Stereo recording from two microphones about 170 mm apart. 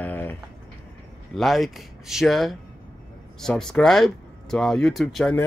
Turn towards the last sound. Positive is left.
turn(degrees=0)  # may be behind; listen again after turning